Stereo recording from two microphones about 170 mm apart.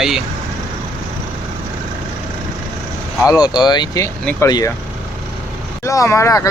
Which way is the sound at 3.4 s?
25° left (ahead or behind).